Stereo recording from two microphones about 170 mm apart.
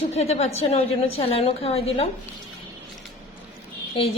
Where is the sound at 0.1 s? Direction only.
40° left (ahead or behind).